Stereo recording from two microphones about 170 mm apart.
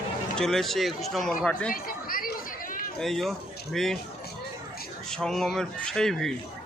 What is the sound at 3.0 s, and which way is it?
Speech, centre (ahead or behind).